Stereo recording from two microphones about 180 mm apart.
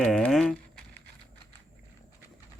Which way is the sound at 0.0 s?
Centre (ahead or behind).